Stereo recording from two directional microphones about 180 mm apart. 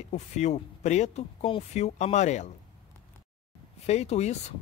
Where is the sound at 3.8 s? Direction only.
35° left (ahead or behind).